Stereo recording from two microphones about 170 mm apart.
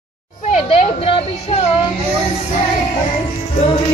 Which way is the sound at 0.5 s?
35° left (ahead or behind).